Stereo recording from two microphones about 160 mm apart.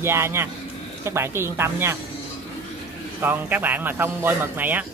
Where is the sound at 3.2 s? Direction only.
10° right (ahead or behind).